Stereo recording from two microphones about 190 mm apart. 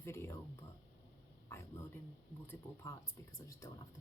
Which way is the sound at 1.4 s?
15° left (ahead or behind).